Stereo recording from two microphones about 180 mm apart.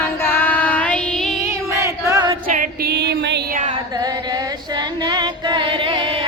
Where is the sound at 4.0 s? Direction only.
20° right (ahead or behind).